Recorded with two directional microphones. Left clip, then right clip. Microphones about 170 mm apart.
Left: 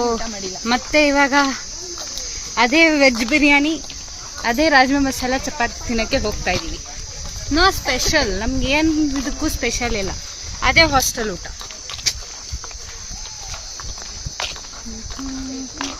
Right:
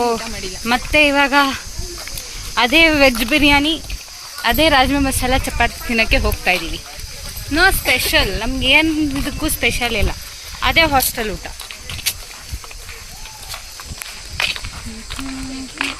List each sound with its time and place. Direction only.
0.6 s speech: 5° left (ahead or behind)
5.5 s speech: 10° right (ahead or behind)
7.5 s speech: 15° left (ahead or behind)
8.4 s speech: 5° left (ahead or behind)